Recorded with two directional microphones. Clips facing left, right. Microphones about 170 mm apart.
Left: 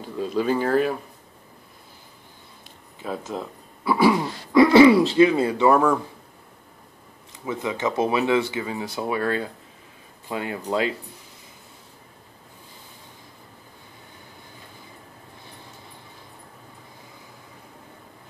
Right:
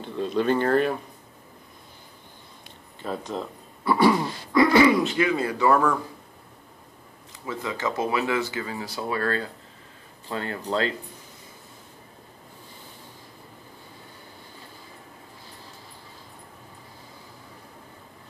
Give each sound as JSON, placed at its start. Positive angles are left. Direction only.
{"t": 0.0, "sound": "speech", "side_deg": 5}
{"t": 3.0, "sound": "speech", "side_deg": 5}
{"t": 4.7, "sound": "speech", "side_deg": 30}
{"t": 7.4, "sound": "speech", "side_deg": 20}